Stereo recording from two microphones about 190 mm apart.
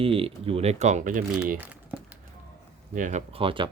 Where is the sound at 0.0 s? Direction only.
30° right (ahead or behind).